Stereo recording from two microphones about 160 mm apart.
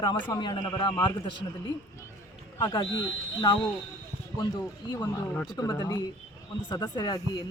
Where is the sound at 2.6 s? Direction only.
25° left (ahead or behind).